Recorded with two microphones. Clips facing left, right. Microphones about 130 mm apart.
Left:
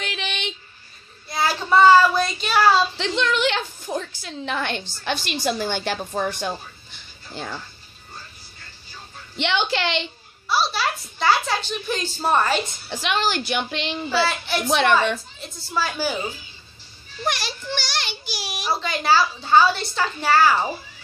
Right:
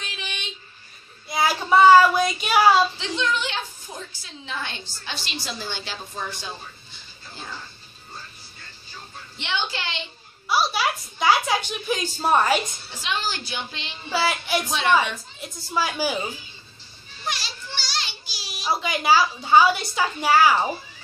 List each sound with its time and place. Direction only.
0.0 s a sound: 70° left (ahead or behind)
1.3 s child singing: 10° right (ahead or behind)
3.0 s a sound: 70° left (ahead or behind)
5.0 s a woman's voice: 55° left (ahead or behind)
9.4 s a woman's voice: 70° left (ahead or behind)
10.5 s a woman's voice: 10° right (ahead or behind)
12.9 s a woman's voice: 70° left (ahead or behind)
15.4 s a woman's voice: 10° right (ahead or behind)
17.2 s a sound: 60° left (ahead or behind)
18.7 s a woman's voice: 10° right (ahead or behind)